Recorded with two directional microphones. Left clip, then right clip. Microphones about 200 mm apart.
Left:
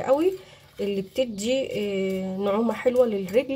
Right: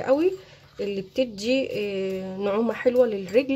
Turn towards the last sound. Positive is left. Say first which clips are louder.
# right 1 dB
turn(degrees=-5)  # may be behind; listen again after turning